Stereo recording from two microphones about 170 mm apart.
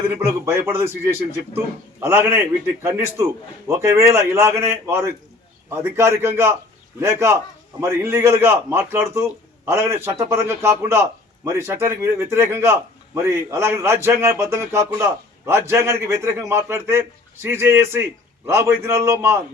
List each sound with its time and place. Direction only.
0.3 s a man's voice: 15° right (ahead or behind)